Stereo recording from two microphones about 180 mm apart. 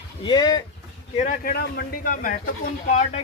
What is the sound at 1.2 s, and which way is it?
A man's voice, 45° left (ahead or behind).